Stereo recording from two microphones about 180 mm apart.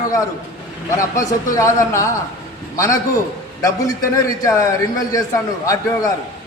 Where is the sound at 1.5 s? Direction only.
20° left (ahead or behind).